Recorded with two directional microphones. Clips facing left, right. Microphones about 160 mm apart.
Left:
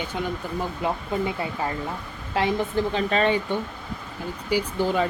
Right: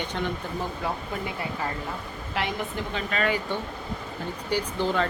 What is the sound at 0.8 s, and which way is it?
Speech, 25° left (ahead or behind).